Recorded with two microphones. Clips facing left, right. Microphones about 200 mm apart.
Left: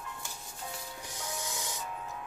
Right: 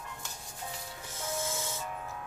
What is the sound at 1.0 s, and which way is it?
Music, 15° left (ahead or behind).